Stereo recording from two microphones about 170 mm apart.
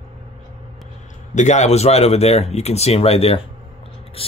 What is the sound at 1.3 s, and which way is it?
Speech, 45° left (ahead or behind).